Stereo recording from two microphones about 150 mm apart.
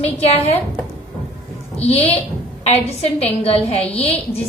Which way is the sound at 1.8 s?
45° left (ahead or behind).